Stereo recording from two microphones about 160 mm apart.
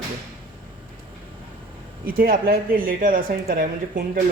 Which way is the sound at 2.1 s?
60° right (ahead or behind).